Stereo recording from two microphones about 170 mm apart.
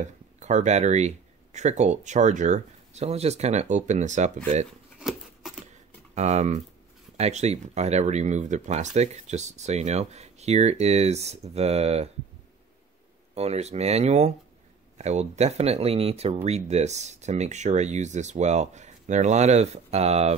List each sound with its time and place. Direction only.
0.0 s speech: 45° right (ahead or behind)
5.4 s a sound: 5° right (ahead or behind)
6.1 s speech: 40° right (ahead or behind)
13.3 s speech: 40° right (ahead or behind)